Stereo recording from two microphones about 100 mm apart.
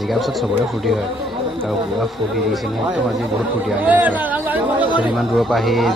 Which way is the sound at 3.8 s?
15° right (ahead or behind).